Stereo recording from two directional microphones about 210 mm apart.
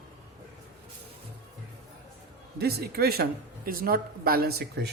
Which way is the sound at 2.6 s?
50° right (ahead or behind).